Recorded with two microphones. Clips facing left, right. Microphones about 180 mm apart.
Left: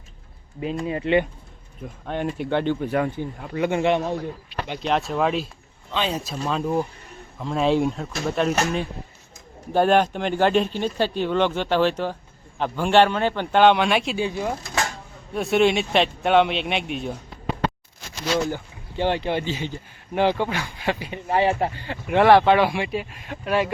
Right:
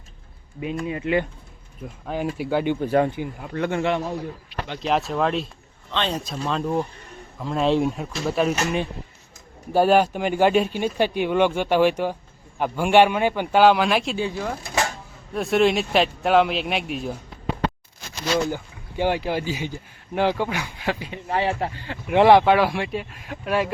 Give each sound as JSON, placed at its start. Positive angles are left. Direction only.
{"t": 0.6, "sound": "speech", "side_deg": 30}
{"t": 2.0, "sound": "a man's voice", "side_deg": -5}
{"t": 2.8, "sound": "speech", "side_deg": -35}
{"t": 3.4, "sound": "a man's voice", "side_deg": 10}
{"t": 4.8, "sound": "a man's voice", "side_deg": 0}
{"t": 9.7, "sound": "speech", "side_deg": -5}
{"t": 14.2, "sound": "speech", "side_deg": 15}
{"t": 15.3, "sound": "a man's voice", "side_deg": 0}
{"t": 18.3, "sound": "a man's voice", "side_deg": 0}
{"t": 18.5, "sound": "a man's voice", "side_deg": -10}
{"t": 21.0, "sound": "speech", "side_deg": 15}
{"t": 22.1, "sound": "speech", "side_deg": -15}
{"t": 22.4, "sound": "a man's voice", "side_deg": 0}